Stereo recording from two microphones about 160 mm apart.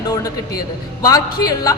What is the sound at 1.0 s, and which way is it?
Speech, 20° left (ahead or behind).